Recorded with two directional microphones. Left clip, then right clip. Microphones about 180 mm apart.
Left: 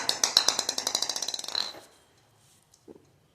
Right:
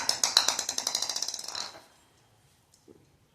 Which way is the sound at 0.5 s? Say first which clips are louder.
Left 2 dB; 15° left (ahead or behind).